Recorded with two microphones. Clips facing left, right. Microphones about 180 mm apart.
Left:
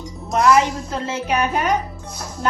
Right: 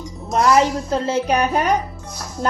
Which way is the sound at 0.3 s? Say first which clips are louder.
Even; 35° right (ahead or behind).